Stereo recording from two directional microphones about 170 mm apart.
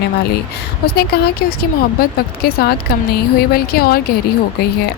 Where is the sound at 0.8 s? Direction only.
65° left (ahead or behind).